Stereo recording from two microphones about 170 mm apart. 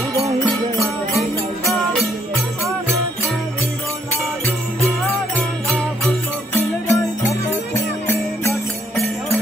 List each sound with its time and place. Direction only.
5.3 s music: 5° left (ahead or behind)